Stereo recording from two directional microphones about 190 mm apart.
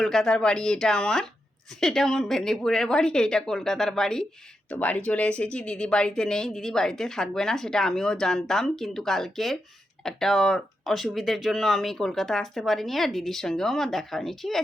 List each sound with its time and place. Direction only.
0.0 s speech: centre (ahead or behind)